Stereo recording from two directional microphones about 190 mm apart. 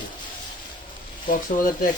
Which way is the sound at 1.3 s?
45° left (ahead or behind).